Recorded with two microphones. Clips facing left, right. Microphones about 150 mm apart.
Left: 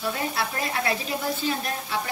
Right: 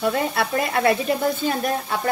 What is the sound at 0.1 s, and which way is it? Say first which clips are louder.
Speech: right 6 dB; 60° right (ahead or behind).